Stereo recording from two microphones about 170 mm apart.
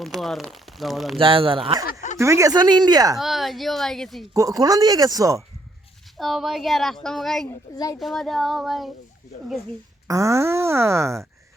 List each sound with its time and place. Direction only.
0.0 s a woman's voice: centre (ahead or behind)
1.2 s speech: 30° right (ahead or behind)
1.8 s a sound: 55° left (ahead or behind)
2.1 s speech: 15° right (ahead or behind)
3.2 s a woman's voice: centre (ahead or behind)
4.4 s speech: 20° right (ahead or behind)
6.1 s a woman's voice: centre (ahead or behind)
7.4 s a child's voice: 20° left (ahead or behind)
7.9 s a woman's voice: centre (ahead or behind)
10.1 s speech: 20° right (ahead or behind)